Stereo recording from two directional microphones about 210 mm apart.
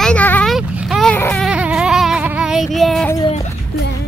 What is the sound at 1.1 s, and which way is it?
Baby cry, 10° left (ahead or behind).